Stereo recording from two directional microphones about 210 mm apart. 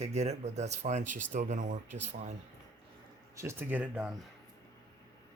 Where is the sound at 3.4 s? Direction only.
10° right (ahead or behind).